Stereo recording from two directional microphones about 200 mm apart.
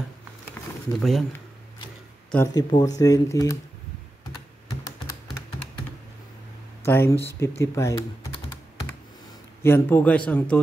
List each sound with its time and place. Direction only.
0.9 s speech: centre (ahead or behind)
2.3 s speech: 15° left (ahead or behind)
6.8 s speech: 10° left (ahead or behind)
9.6 s speech: 10° left (ahead or behind)